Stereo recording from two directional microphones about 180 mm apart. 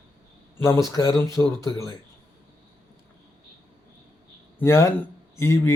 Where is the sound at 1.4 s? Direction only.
5° left (ahead or behind).